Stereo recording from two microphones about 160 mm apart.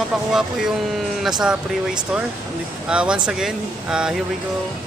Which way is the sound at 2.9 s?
5° right (ahead or behind).